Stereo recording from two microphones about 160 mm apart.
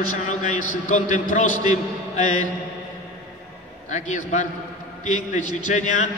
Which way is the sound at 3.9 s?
50° left (ahead or behind).